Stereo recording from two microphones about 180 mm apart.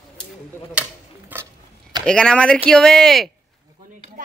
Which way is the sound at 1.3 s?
10° right (ahead or behind).